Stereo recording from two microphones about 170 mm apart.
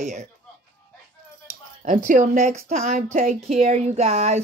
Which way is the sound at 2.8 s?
40° right (ahead or behind).